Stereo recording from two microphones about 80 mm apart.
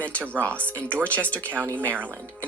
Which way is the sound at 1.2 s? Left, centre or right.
Centre.